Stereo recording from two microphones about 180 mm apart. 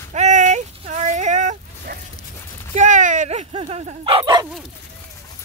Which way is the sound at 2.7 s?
45° right (ahead or behind).